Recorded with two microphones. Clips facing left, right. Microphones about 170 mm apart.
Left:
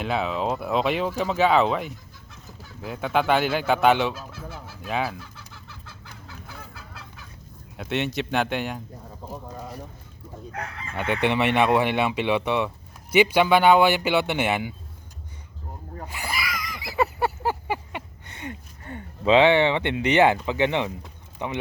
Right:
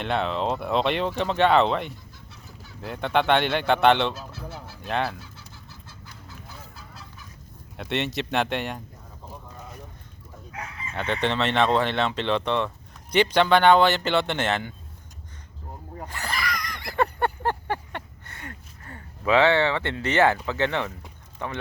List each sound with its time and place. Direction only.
0.0 s speech: 5° left (ahead or behind)
5.8 s chicken: 65° left (ahead or behind)
7.8 s speech: centre (ahead or behind)
9.3 s a sound: 35° left (ahead or behind)
10.5 s chicken: 60° left (ahead or behind)
10.9 s speech: 10° left (ahead or behind)
16.0 s a sound: 10° left (ahead or behind)
18.3 s speech: 20° left (ahead or behind)